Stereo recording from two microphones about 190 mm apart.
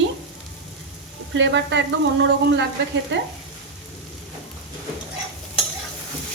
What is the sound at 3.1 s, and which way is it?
Speech, 70° right (ahead or behind).